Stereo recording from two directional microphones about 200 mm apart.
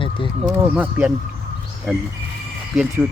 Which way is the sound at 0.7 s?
5° right (ahead or behind).